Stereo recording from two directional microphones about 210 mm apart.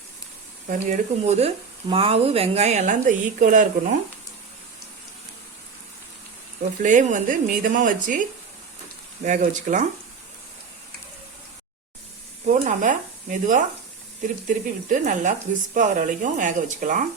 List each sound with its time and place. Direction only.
0.9 s speech: 30° right (ahead or behind)
6.8 s speech: 40° right (ahead or behind)
12.6 s speech: 40° right (ahead or behind)